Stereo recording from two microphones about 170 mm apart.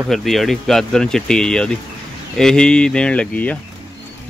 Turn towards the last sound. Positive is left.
turn(degrees=10)  # may be behind; listen again after turning